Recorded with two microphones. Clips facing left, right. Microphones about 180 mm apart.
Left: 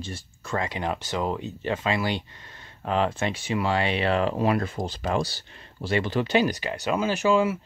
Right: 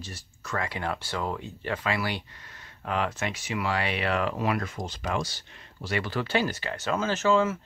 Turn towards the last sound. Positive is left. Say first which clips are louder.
# left 2 dB
turn(degrees=15)  # may be behind; listen again after turning